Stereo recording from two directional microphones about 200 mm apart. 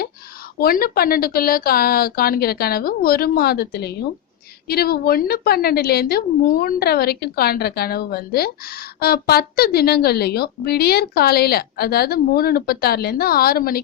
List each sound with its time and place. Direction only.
0.6 s speech: 50° left (ahead or behind)